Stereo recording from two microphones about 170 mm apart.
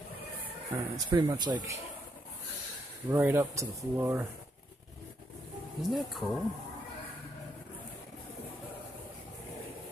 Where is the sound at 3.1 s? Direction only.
10° right (ahead or behind).